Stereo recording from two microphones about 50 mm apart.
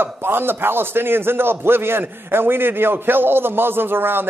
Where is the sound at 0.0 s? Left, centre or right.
Right.